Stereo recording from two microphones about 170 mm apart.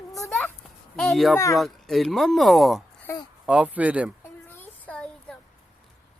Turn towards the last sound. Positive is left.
turn(degrees=5)  # may be behind; listen again after turning